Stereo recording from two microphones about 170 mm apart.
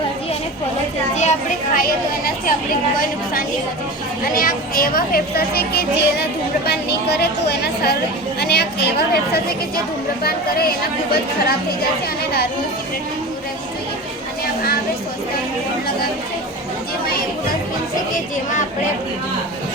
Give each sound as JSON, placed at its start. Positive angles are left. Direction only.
{"t": 1.1, "sound": "a child's voice", "side_deg": 40}
{"t": 4.4, "sound": "a woman's voice", "side_deg": 60}